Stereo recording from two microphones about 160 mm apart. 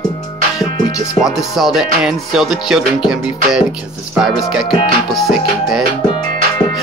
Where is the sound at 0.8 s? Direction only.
20° left (ahead or behind).